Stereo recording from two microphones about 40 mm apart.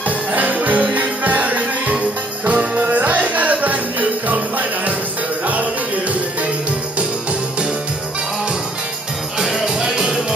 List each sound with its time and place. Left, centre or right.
0.3 s music: right
9.4 s music: centre